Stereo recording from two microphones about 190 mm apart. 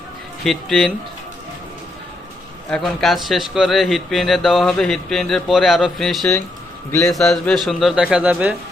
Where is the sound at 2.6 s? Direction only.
Centre (ahead or behind).